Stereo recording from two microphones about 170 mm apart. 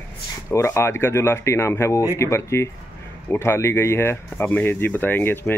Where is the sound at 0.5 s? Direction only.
15° left (ahead or behind).